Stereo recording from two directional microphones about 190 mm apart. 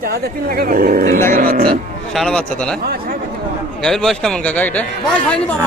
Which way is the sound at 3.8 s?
5° left (ahead or behind).